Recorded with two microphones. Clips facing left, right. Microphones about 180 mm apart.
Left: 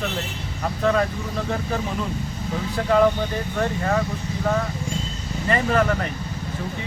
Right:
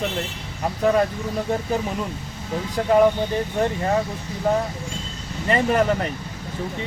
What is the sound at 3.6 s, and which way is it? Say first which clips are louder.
Speech: right 1 dB; 25° right (ahead or behind).